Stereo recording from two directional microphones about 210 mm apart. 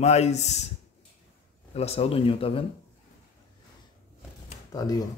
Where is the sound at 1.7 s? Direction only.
30° left (ahead or behind).